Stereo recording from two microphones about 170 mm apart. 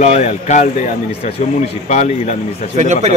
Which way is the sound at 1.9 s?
45° left (ahead or behind).